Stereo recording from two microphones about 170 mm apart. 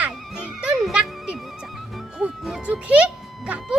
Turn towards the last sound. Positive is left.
turn(degrees=-5)  # may be behind; listen again after turning